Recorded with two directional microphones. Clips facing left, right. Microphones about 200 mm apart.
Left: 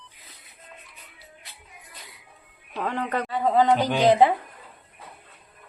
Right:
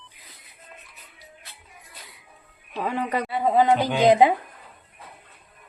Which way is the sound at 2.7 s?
10° right (ahead or behind).